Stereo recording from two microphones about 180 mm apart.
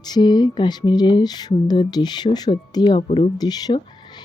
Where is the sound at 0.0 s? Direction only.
25° left (ahead or behind).